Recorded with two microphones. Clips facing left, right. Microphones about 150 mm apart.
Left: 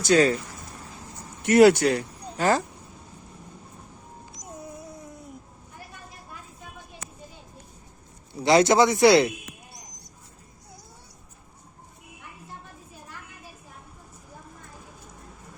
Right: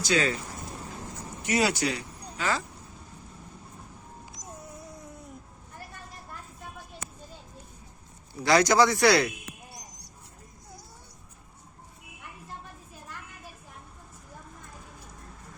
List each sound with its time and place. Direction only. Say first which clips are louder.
0.0 s speech: left 7 dB; 40° left (ahead or behind)
1.4 s speech: left 11 dB; 60° left (ahead or behind)
8.3 s a man's voice: left 4 dB; 25° left (ahead or behind)